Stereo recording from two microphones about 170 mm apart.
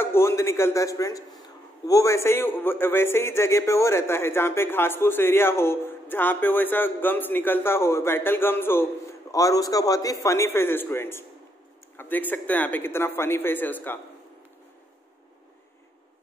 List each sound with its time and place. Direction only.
0.0 s a man's voice: 15° left (ahead or behind)